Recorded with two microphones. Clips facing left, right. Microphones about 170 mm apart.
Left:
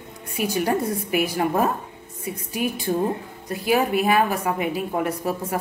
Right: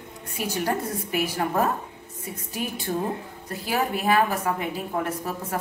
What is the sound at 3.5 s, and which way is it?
A woman's voice, 15° left (ahead or behind).